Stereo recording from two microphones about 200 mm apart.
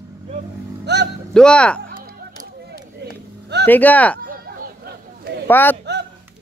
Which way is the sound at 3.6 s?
10° left (ahead or behind).